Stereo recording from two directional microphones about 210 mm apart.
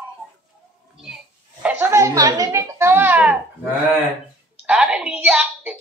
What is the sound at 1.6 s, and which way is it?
Speech, 10° right (ahead or behind).